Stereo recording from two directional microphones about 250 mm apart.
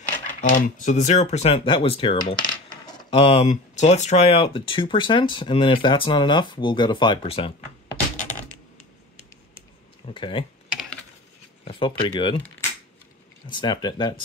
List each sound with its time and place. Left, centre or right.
0.3 s speech: left
10.0 s speech: centre
10.7 s computer keyboard: centre
11.6 s speech: left